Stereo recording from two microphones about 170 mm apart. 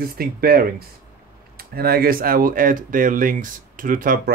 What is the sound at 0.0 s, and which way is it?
Speech, 60° right (ahead or behind).